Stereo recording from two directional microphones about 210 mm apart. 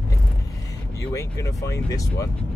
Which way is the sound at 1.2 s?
15° left (ahead or behind).